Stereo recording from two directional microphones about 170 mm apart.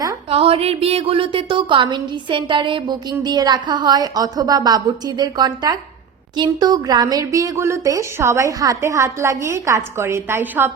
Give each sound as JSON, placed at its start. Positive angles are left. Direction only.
{"t": 0.3, "sound": "a woman's voice", "side_deg": -35}